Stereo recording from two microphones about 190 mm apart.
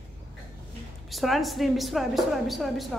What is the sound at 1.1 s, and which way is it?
A woman's voice, centre (ahead or behind).